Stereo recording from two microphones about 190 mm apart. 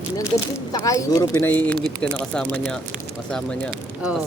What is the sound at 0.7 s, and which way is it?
Speech, 20° left (ahead or behind).